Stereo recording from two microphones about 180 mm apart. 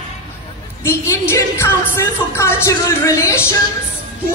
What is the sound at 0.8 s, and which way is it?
A woman's voice, 15° left (ahead or behind).